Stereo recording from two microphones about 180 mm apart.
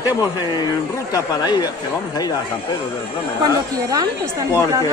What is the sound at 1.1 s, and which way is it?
Speech, 20° left (ahead or behind).